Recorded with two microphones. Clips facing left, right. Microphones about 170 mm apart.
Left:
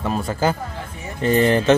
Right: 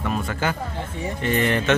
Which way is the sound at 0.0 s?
30° left (ahead or behind).